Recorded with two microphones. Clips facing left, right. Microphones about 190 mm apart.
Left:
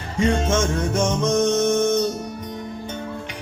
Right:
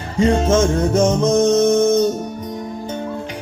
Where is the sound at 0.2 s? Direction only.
30° right (ahead or behind).